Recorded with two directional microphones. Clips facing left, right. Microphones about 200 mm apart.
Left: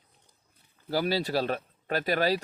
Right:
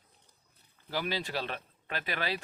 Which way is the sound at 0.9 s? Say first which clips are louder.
Left 7 dB; 40° left (ahead or behind).